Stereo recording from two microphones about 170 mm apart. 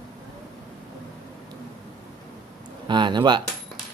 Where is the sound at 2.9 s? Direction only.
25° right (ahead or behind).